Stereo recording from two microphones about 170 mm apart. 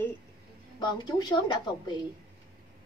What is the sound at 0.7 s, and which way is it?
A woman's voice, 25° left (ahead or behind).